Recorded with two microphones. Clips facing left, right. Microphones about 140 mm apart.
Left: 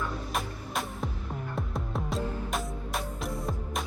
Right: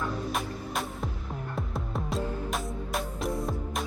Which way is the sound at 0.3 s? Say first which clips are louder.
Right 1 dB; centre (ahead or behind).